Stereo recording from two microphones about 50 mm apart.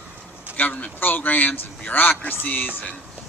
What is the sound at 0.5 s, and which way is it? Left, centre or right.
Speech, left.